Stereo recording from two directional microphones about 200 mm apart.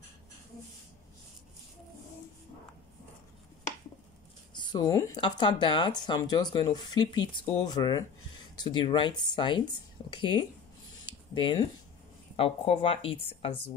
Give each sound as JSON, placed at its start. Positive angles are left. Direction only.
{"t": 4.6, "sound": "speech", "side_deg": 20}